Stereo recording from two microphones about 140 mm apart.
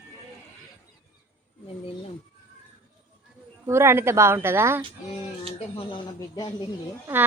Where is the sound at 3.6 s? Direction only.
20° right (ahead or behind).